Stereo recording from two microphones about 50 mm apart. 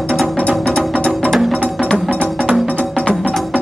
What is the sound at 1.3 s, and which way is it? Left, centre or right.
Music, centre.